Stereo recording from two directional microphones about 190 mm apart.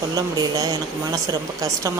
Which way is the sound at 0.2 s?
20° right (ahead or behind).